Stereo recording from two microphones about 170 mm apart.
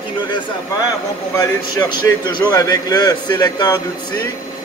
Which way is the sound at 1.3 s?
25° left (ahead or behind).